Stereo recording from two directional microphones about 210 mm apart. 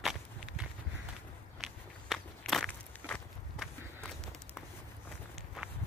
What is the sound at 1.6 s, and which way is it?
Walk, centre (ahead or behind).